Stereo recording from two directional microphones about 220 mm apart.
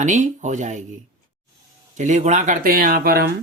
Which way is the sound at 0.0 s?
35° right (ahead or behind).